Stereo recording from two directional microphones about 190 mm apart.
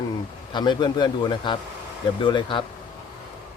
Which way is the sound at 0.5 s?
25° left (ahead or behind).